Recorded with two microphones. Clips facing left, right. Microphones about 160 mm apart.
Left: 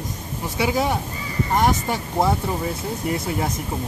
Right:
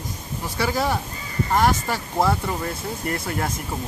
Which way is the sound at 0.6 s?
15° left (ahead or behind).